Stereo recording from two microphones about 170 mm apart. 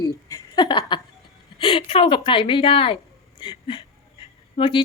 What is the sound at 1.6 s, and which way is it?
A woman's voice, 35° left (ahead or behind).